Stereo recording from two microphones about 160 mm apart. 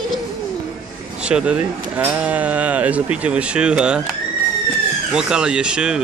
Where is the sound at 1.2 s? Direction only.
5° right (ahead or behind).